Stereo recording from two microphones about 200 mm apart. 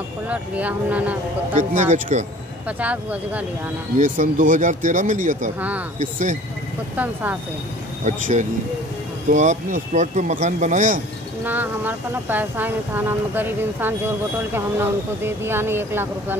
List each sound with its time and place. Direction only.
0.3 s speech: 5° right (ahead or behind)
1.6 s speech: 40° right (ahead or behind)
2.8 s speech: 5° right (ahead or behind)
4.0 s speech: 40° right (ahead or behind)
8.0 s speech: 35° right (ahead or behind)
11.4 s speech: 10° right (ahead or behind)